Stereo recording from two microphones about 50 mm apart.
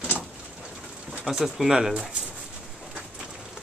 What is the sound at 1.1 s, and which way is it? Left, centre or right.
Speech, centre.